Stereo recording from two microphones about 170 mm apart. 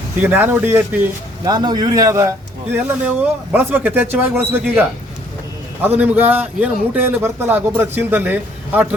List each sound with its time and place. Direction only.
0.2 s a man's voice: 10° right (ahead or behind)
1.5 s a man's voice: 25° right (ahead or behind)
6.0 s a man's voice: 10° right (ahead or behind)